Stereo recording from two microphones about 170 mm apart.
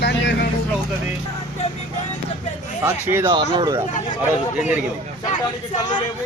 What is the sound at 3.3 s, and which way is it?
Speech, 30° right (ahead or behind).